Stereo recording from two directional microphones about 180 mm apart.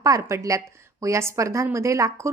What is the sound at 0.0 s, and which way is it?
A woman's voice, 15° right (ahead or behind).